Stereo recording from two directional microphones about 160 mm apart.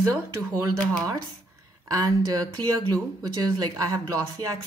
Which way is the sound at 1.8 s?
20° right (ahead or behind).